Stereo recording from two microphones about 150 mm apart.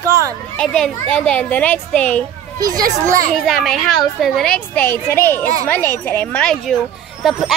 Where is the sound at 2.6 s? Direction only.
25° right (ahead or behind).